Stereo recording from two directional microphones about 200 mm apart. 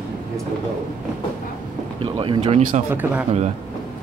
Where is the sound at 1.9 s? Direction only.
25° right (ahead or behind).